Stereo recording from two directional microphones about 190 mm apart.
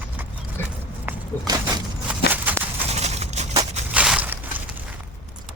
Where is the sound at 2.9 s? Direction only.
35° right (ahead or behind).